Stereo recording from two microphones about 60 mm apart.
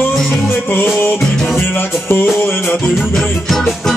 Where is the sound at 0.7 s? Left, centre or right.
Left.